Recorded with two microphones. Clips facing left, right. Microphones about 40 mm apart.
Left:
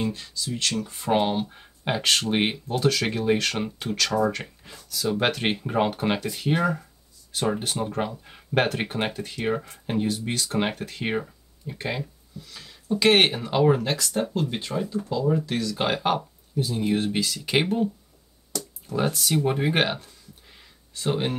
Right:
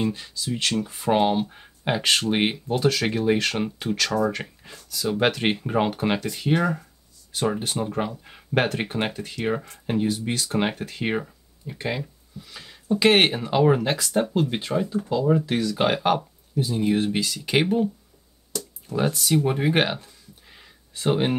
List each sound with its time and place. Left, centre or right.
0.0 s speech: centre
0.9 s speech: centre
18.9 s speech: centre